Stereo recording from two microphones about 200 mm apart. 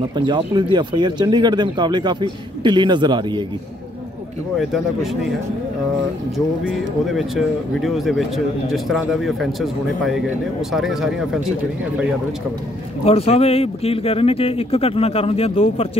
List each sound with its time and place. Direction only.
0.1 s speech: 20° right (ahead or behind)
6.3 s speech: centre (ahead or behind)
13.0 s speech: 30° left (ahead or behind)